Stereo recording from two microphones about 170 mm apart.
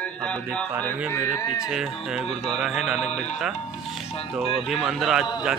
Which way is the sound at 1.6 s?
5° right (ahead or behind).